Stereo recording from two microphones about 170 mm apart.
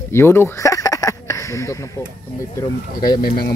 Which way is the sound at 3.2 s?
60° left (ahead or behind).